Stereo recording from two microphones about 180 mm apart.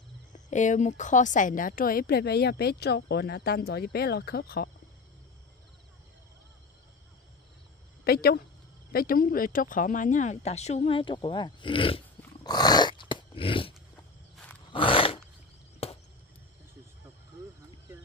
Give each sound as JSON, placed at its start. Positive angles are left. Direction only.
{"t": 0.5, "sound": "a woman's voice", "side_deg": 40}
{"t": 8.0, "sound": "speech", "side_deg": 60}
{"t": 12.4, "sound": "dog", "side_deg": 20}
{"t": 14.3, "sound": "roar", "side_deg": 5}
{"t": 14.7, "sound": "roar", "side_deg": 30}
{"t": 15.8, "sound": "chop", "side_deg": 35}